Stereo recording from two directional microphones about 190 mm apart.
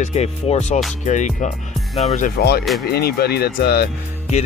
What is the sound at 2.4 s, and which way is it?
Speech, 55° left (ahead or behind).